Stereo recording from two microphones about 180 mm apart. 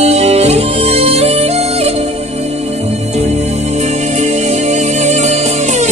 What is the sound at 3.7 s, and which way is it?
Music, 40° right (ahead or behind).